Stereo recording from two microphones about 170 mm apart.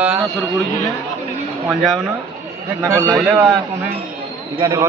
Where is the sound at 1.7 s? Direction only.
Centre (ahead or behind).